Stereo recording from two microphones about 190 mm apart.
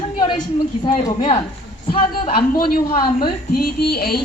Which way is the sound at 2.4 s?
50° left (ahead or behind).